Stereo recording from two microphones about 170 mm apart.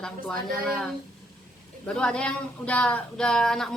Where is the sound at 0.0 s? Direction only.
5° left (ahead or behind).